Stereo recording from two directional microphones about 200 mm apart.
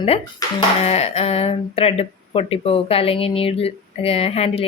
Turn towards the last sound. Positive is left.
turn(degrees=30)  # may be behind; listen again after turning